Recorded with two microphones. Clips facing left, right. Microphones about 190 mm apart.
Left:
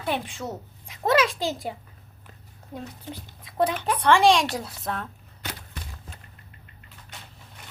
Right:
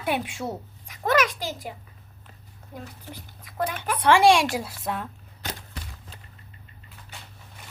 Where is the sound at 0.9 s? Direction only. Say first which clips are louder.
Left 1 dB; 25° left (ahead or behind).